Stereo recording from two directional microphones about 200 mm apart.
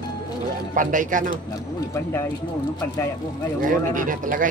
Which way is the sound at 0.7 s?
40° right (ahead or behind).